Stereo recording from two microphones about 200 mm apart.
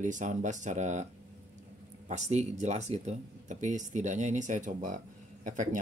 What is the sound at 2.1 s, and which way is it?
Speech, 35° right (ahead or behind).